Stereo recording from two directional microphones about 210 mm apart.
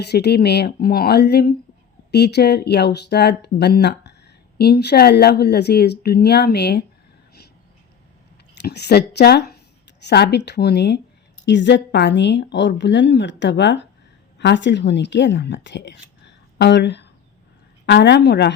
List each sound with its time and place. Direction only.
0.0 s a woman's voice: 50° left (ahead or behind)
8.6 s a woman's voice: 50° left (ahead or behind)